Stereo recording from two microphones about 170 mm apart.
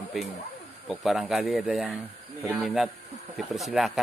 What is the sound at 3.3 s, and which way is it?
Speech, centre (ahead or behind).